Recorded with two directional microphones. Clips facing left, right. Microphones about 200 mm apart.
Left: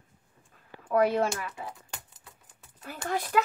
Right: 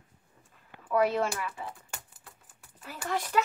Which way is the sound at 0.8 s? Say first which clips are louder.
Left 2 dB; 55° left (ahead or behind).